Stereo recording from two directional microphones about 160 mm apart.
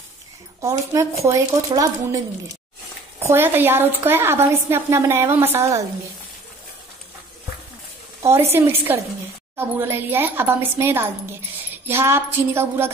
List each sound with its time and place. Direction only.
0.6 s a woman's voice: 20° right (ahead or behind)
8.2 s a woman's voice: 15° right (ahead or behind)